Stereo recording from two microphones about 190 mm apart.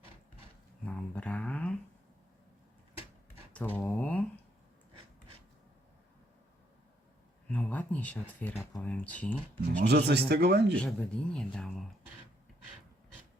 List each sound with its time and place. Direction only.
0.9 s a sound: 5° left (ahead or behind)
3.5 s speech: 10° left (ahead or behind)
7.5 s speech: 5° left (ahead or behind)
9.8 s speech: 60° right (ahead or behind)
10.8 s speech: 5° left (ahead or behind)